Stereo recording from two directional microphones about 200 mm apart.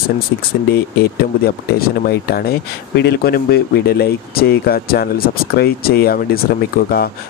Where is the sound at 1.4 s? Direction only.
50° left (ahead or behind).